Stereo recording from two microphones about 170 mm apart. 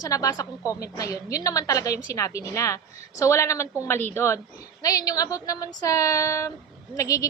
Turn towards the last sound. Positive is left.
turn(degrees=20)  # may be behind; listen again after turning